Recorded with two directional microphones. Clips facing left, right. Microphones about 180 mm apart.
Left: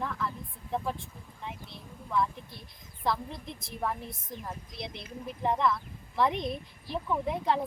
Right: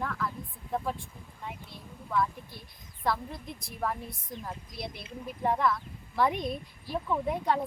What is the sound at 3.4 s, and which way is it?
Speech, 25° left (ahead or behind).